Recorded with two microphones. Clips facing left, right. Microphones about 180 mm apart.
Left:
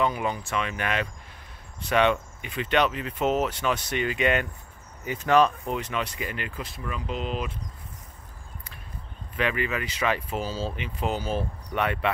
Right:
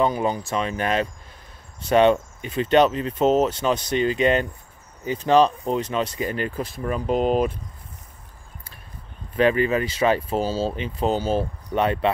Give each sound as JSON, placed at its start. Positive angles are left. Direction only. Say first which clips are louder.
{"t": 0.0, "sound": "speech", "louder": "right 5 dB", "side_deg": -35}
{"t": 9.4, "sound": "speech", "louder": "right 8 dB", "side_deg": -35}